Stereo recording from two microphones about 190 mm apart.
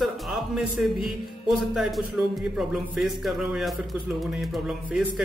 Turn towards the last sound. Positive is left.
turn(degrees=0)  # may be behind; listen again after turning